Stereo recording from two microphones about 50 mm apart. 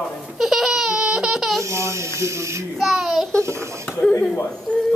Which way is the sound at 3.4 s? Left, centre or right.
Right.